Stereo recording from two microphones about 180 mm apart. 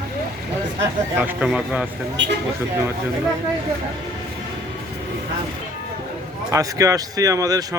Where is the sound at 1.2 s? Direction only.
10° right (ahead or behind).